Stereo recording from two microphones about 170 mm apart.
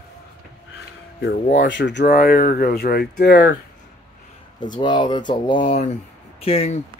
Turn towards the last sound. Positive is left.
turn(degrees=35)  # may be behind; listen again after turning